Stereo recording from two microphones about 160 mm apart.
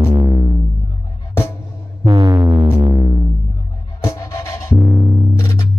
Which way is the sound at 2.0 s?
30° right (ahead or behind).